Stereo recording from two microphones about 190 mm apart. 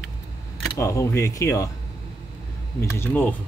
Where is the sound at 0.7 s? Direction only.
15° left (ahead or behind).